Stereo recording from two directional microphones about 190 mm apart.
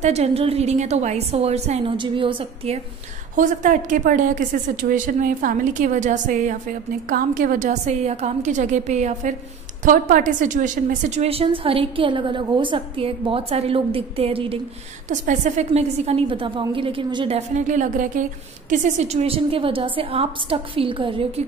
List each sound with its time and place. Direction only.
0.0 s a woman's voice: 35° right (ahead or behind)
3.3 s a woman's voice: 45° right (ahead or behind)
15.0 s a woman's voice: 40° right (ahead or behind)
17.6 s a woman's voice: 40° right (ahead or behind)